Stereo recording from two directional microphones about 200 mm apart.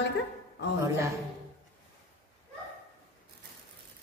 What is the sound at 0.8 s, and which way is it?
Speech, 15° right (ahead or behind).